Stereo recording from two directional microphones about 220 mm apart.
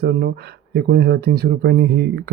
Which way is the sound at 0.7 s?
45° right (ahead or behind).